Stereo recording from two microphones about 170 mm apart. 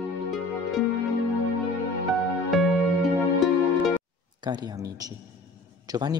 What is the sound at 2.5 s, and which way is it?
Music, centre (ahead or behind).